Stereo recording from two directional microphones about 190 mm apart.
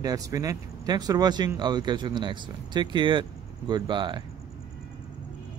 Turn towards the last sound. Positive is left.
turn(degrees=-25)  # may be behind; listen again after turning